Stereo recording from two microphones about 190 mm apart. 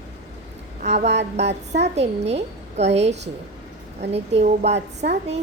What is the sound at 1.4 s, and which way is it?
Speech, 65° right (ahead or behind).